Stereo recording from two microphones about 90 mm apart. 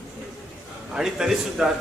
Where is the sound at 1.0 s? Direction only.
5° right (ahead or behind).